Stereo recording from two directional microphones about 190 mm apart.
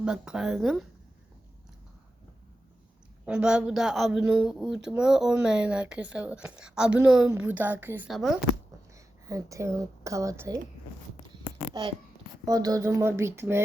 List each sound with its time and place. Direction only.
0.0 s speech: 5° right (ahead or behind)
3.2 s speech: 5° right (ahead or behind)
9.2 s a woman's voice: 15° right (ahead or behind)
11.7 s a child's voice: 25° right (ahead or behind)